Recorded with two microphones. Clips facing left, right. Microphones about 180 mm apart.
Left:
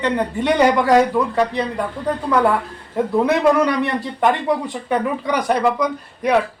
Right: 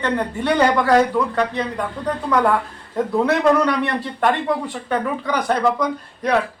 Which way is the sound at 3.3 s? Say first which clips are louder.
Even; 10° left (ahead or behind).